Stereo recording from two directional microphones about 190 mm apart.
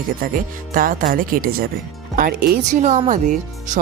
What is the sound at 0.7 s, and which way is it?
Speech, 50° right (ahead or behind).